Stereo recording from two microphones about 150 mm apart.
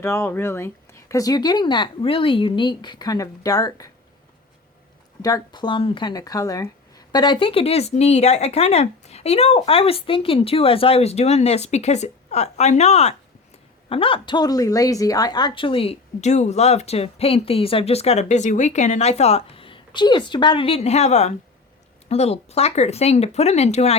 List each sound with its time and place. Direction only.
0.0 s speech: 15° left (ahead or behind)
5.2 s speech: 25° left (ahead or behind); by 23.9 s 45° left (ahead or behind)